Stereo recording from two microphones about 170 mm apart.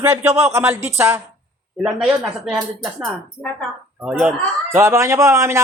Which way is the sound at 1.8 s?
5° right (ahead or behind).